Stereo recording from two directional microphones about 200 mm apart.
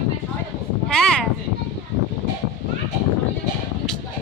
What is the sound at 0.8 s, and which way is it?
Speech, centre (ahead or behind).